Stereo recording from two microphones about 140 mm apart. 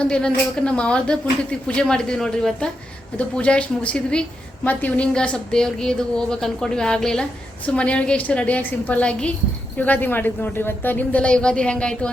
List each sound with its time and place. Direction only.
0.0 s a woman's voice: 5° left (ahead or behind)